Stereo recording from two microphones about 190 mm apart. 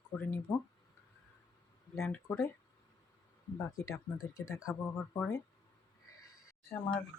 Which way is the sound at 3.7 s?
15° left (ahead or behind).